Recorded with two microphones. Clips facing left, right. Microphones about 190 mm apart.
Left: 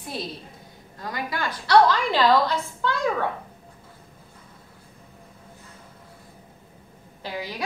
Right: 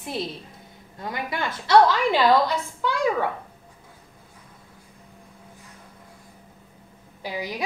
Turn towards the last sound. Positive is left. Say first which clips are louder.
# right 2 dB
turn(degrees=-15)  # may be behind; listen again after turning